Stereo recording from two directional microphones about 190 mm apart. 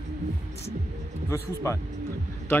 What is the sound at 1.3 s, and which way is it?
Speech, 15° left (ahead or behind).